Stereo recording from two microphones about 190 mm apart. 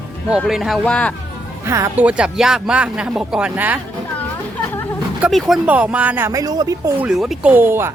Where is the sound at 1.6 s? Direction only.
15° right (ahead or behind).